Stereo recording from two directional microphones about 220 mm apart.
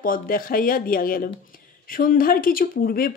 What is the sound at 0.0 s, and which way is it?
Speech, 40° left (ahead or behind).